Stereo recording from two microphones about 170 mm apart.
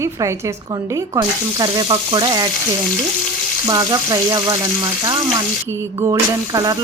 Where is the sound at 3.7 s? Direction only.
20° right (ahead or behind).